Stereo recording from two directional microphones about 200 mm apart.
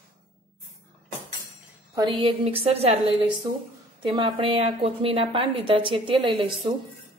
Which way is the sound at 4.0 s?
25° right (ahead or behind).